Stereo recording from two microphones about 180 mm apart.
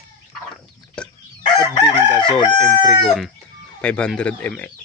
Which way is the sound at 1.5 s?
25° left (ahead or behind).